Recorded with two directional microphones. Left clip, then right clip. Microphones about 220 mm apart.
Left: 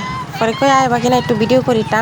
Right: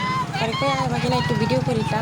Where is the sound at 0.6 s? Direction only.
30° left (ahead or behind).